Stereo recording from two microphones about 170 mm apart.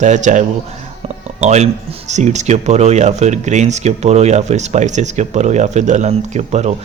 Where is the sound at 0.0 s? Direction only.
45° right (ahead or behind).